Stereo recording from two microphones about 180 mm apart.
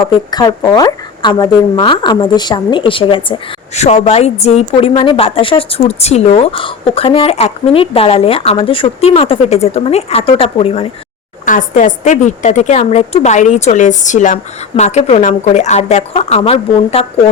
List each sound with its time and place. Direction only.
0.0 s speech: 20° left (ahead or behind)
11.4 s a woman's voice: 45° left (ahead or behind)